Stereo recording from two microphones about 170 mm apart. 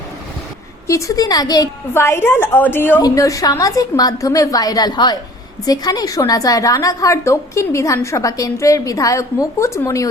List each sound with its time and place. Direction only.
0.9 s a woman's voice: 20° left (ahead or behind)